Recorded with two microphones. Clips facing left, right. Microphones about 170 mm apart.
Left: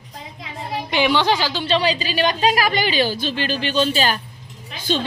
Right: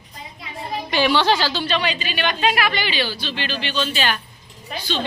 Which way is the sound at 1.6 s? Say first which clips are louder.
Left 3 dB; 30° left (ahead or behind).